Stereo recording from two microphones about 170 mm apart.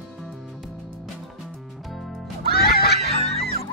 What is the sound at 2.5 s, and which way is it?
Music, 65° left (ahead or behind).